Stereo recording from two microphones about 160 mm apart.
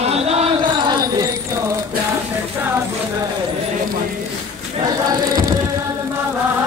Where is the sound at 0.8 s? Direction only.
20° right (ahead or behind).